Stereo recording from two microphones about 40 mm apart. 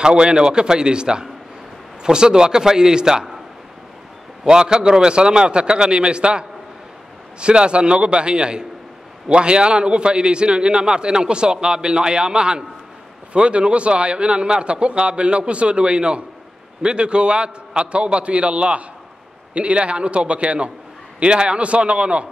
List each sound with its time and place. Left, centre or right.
0.0 s a man's voice: right
4.5 s a man's voice: centre